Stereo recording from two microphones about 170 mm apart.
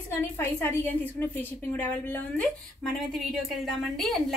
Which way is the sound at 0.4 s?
15° left (ahead or behind).